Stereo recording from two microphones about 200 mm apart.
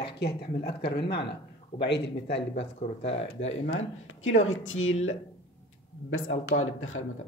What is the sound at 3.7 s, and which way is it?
Speech, 85° left.